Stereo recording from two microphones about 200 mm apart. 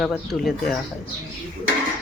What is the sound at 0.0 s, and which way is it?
Speech, centre (ahead or behind).